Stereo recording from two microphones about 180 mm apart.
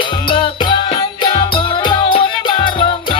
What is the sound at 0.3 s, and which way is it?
Music, 25° left (ahead or behind).